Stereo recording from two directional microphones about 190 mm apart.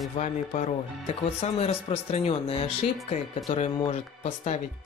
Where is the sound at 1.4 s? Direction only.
35° left (ahead or behind).